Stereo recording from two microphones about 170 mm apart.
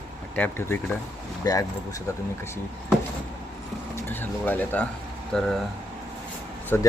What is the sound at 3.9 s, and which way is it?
Speech, 15° left (ahead or behind).